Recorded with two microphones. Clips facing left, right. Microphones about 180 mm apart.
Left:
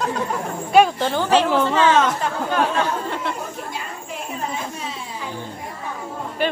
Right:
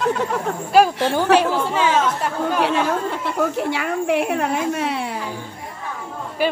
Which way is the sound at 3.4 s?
75° right (ahead or behind).